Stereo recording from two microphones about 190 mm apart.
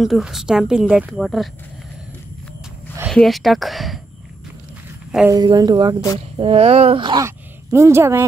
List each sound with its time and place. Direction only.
0.0 s a woman's voice: centre (ahead or behind)
3.1 s a woman's voice: centre (ahead or behind)
5.3 s speech: 20° right (ahead or behind)